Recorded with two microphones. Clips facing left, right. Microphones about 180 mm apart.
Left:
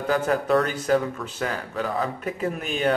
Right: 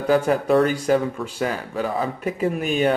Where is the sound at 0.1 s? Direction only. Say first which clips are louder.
Right 4 dB; 5° right (ahead or behind).